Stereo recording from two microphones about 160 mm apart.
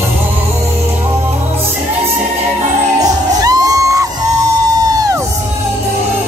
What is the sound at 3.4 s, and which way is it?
Music, 25° right (ahead or behind).